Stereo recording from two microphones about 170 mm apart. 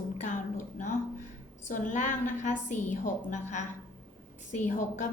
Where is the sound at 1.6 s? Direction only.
50° left (ahead or behind).